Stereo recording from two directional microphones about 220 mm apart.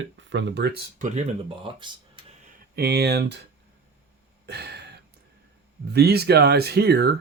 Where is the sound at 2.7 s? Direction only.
45° right (ahead or behind).